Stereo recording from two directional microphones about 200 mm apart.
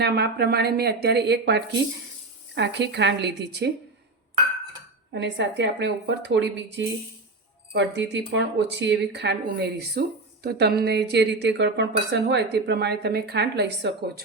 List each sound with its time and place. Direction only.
0.0 s speech: 55° right (ahead or behind)
5.1 s speech: 60° right (ahead or behind)